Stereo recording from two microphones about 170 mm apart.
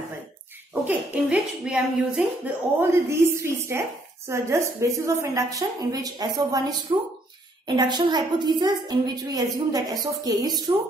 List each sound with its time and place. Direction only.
0.8 s a woman's voice: 10° right (ahead or behind)